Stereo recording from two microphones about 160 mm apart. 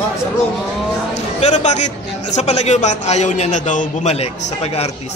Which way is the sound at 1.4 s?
45° left (ahead or behind).